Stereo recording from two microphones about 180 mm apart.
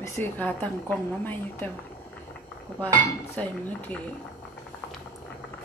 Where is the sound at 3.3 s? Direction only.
10° left (ahead or behind).